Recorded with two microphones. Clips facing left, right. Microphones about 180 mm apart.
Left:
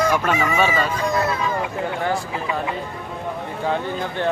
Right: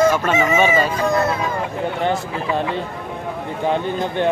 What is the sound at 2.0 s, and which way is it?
Speech, 25° right (ahead or behind).